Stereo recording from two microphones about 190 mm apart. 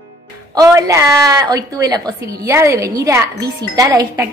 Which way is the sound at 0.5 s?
20° right (ahead or behind).